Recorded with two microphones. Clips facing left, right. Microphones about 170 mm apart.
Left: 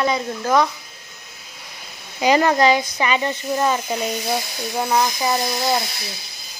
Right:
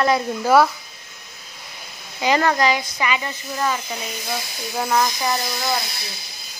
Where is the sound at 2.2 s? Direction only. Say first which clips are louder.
Left 3 dB; 20° left (ahead or behind).